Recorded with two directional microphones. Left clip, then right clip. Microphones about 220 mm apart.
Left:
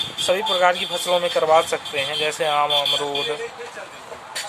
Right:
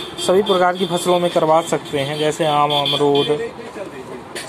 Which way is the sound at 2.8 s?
45° left (ahead or behind).